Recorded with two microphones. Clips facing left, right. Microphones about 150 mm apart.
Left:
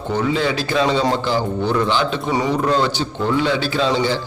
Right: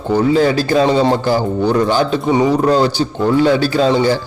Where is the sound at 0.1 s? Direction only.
40° right (ahead or behind).